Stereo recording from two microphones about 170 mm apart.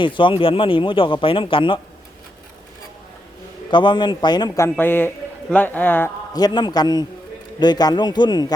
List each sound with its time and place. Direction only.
0.0 s speech: 30° left (ahead or behind)
3.7 s a man's voice: 25° left (ahead or behind); by 6.1 s 10° left (ahead or behind)
6.3 s a man's voice: 25° left (ahead or behind)